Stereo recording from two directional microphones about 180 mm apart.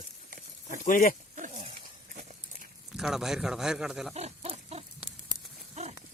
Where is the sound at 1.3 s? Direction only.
40° right (ahead or behind).